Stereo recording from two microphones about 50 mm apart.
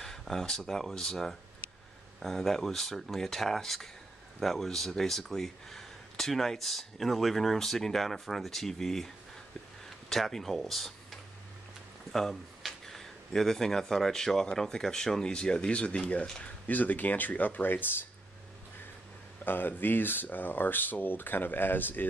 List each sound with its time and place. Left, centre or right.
0.0 s speech: centre; by 17.8 s left
19.4 s speech: left